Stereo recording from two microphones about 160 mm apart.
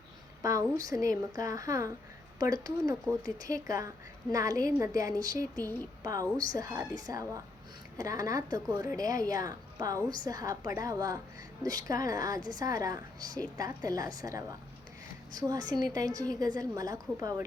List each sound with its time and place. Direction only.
0.4 s a woman's voice: 20° right (ahead or behind)
5.6 s speech: 10° left (ahead or behind)
6.0 s a woman's voice: 25° right (ahead or behind)